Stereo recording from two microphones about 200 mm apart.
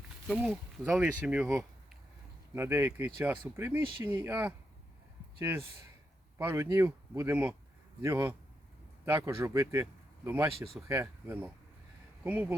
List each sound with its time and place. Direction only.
0.3 s speech: centre (ahead or behind)
6.4 s speech: 10° right (ahead or behind)